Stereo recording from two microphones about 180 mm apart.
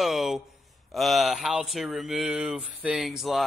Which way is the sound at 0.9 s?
Centre (ahead or behind).